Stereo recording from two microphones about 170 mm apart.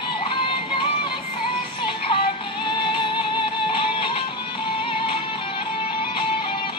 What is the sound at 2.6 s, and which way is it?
Music, 25° left (ahead or behind).